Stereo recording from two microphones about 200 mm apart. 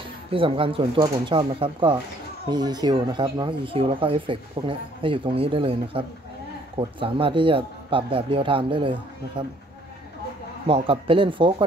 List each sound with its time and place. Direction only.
0.3 s speech: 25° right (ahead or behind)
10.9 s speech: 25° right (ahead or behind)